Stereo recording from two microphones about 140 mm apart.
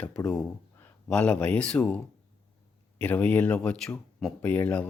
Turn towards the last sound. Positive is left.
turn(degrees=10)  # may be behind; listen again after turning